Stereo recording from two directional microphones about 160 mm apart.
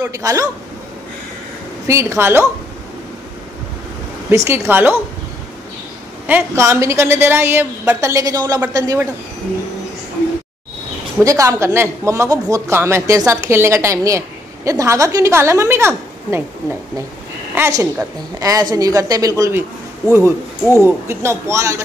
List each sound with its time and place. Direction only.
0.0 s a woman's voice: 20° right (ahead or behind)
1.9 s speech: 15° right (ahead or behind)
4.5 s speech: 10° right (ahead or behind)
6.2 s a woman's voice: 15° right (ahead or behind)
11.1 s speech: 20° right (ahead or behind)
17.6 s a woman's voice: 15° right (ahead or behind)